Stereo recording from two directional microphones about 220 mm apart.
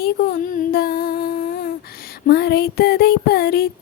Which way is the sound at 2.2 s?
45° left (ahead or behind).